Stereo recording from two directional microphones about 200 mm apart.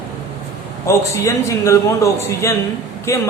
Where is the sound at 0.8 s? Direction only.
15° left (ahead or behind).